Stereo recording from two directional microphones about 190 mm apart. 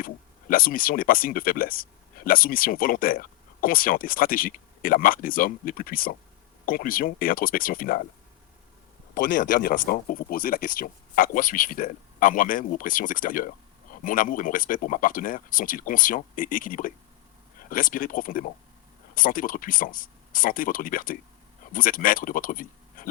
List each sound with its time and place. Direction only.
0.0 s speech: 50° left (ahead or behind)
9.4 s speech: 45° left (ahead or behind)